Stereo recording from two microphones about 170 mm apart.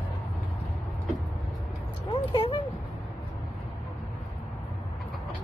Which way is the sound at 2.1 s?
30° left (ahead or behind).